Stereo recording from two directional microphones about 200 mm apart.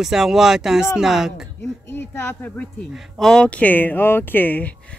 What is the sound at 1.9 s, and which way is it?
Speech, 10° left (ahead or behind).